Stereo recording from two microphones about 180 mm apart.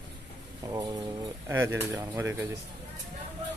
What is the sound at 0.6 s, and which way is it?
Speech, 25° right (ahead or behind).